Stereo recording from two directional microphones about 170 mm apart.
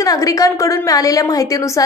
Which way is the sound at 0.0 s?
20° left (ahead or behind).